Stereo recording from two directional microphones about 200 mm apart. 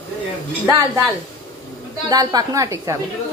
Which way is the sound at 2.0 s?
20° right (ahead or behind).